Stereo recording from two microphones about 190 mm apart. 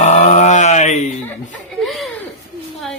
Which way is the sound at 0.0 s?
35° left (ahead or behind).